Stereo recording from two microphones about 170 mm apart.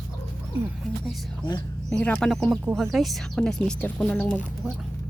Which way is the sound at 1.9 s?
10° left (ahead or behind).